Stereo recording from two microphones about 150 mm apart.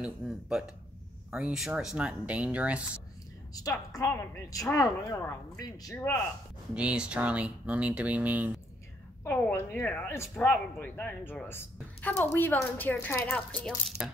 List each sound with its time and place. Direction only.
0.0 s speech: 5° right (ahead or behind)
3.5 s speech: 25° left (ahead or behind)
6.7 s speech: 5° right (ahead or behind)
9.2 s a woman's voice: 15° left (ahead or behind); by 14.1 s centre (ahead or behind)